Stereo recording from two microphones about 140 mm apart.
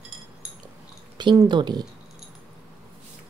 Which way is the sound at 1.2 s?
35° right (ahead or behind).